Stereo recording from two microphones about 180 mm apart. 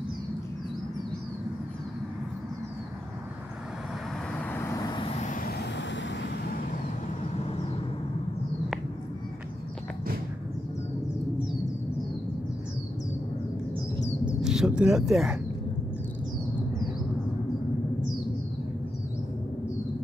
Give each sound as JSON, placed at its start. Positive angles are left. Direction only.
{"t": 4.5, "sound": "vehicle", "side_deg": 15}
{"t": 5.0, "sound": "vehicle", "side_deg": 40}
{"t": 5.5, "sound": "vehicle", "side_deg": 65}
{"t": 14.2, "sound": "bird", "side_deg": -5}